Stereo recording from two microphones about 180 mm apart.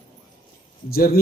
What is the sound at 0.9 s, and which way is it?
Speech, 55° left (ahead or behind).